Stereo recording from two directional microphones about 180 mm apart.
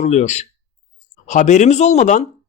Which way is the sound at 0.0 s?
40° left (ahead or behind).